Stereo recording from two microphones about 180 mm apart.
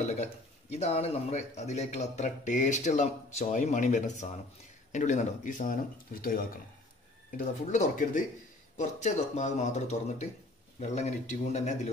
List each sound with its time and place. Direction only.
0.1 s a man's voice: 35° left (ahead or behind)